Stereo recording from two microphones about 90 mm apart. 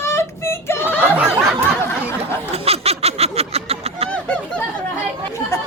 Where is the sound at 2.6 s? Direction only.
90° right.